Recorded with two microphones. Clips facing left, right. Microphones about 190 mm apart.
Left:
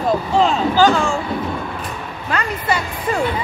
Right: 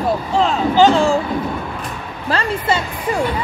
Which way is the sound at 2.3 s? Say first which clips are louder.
Right 3 dB; 30° right (ahead or behind).